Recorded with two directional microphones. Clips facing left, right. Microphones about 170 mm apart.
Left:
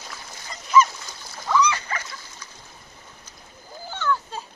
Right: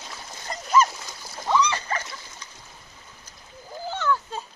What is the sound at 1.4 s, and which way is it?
Splash, 25° right (ahead or behind).